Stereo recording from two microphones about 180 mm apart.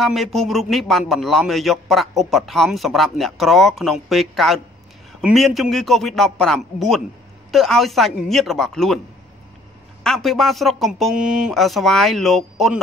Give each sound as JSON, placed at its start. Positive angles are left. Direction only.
{"t": 0.0, "sound": "a man's voice", "side_deg": 0}
{"t": 10.0, "sound": "a man's voice", "side_deg": 0}